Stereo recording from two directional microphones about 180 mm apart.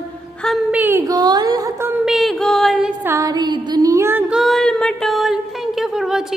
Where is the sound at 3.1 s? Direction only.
20° right (ahead or behind).